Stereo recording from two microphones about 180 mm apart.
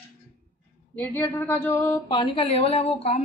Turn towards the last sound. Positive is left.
turn(degrees=35)  # may be behind; listen again after turning